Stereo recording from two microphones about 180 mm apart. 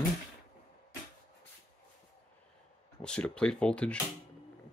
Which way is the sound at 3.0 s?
5° left (ahead or behind).